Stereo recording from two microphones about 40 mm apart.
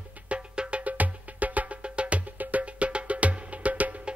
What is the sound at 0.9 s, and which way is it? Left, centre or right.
Music, right.